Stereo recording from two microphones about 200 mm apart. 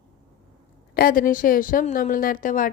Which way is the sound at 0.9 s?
45° left (ahead or behind).